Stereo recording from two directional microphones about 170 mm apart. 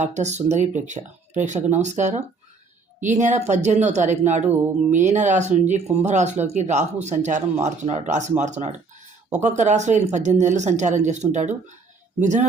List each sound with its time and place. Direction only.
0.0 s speech: 45° right (ahead or behind)